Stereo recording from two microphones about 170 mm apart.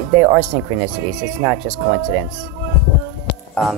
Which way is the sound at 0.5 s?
40° right (ahead or behind).